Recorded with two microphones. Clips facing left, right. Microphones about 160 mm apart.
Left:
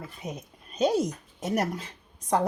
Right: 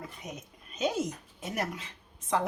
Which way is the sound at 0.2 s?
35° left (ahead or behind).